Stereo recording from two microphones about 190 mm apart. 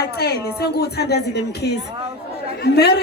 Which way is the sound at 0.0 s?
55° left (ahead or behind).